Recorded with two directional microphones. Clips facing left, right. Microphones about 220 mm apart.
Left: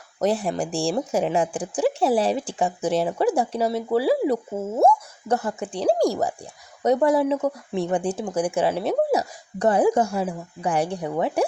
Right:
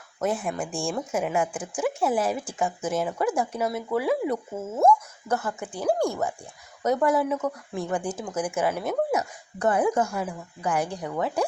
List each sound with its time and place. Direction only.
0.2 s speech: 35° left (ahead or behind)